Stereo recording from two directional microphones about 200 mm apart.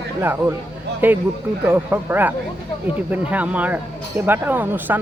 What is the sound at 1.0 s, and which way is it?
Speech, 10° right (ahead or behind).